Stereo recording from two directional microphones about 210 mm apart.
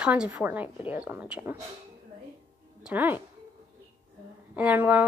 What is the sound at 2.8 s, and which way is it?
Speech, 5° right (ahead or behind).